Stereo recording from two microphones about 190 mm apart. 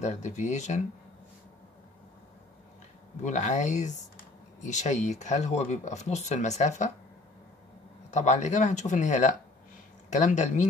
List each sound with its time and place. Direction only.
0.0 s speech: 40° left (ahead or behind)
3.3 s speech: 40° left (ahead or behind)
8.1 s speech: 40° left (ahead or behind)